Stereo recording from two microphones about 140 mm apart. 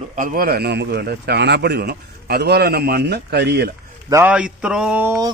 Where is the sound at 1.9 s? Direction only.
90° right.